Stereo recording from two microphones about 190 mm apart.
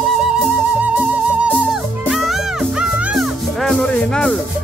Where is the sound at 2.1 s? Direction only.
Centre (ahead or behind).